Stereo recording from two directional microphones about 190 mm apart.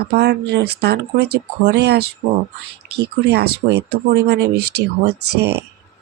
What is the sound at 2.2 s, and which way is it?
Speech, 45° right (ahead or behind).